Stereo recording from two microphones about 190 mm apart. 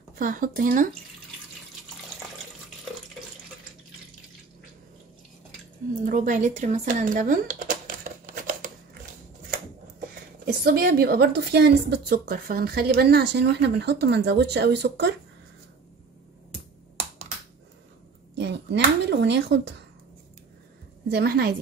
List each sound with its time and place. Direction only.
0.1 s speech: 45° right (ahead or behind)
6.0 s typing: 45° right (ahead or behind)
9.5 s speech: 50° right (ahead or behind)
18.4 s a sound: 65° right (ahead or behind)
21.1 s speech: 55° right (ahead or behind)